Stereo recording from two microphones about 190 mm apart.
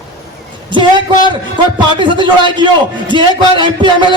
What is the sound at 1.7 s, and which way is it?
A man's voice, 25° right (ahead or behind).